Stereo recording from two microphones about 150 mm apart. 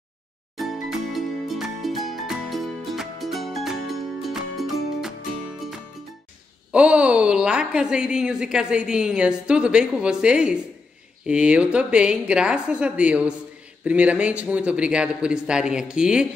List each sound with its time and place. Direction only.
0.6 s music: centre (ahead or behind)
6.7 s a woman's voice: 5° right (ahead or behind)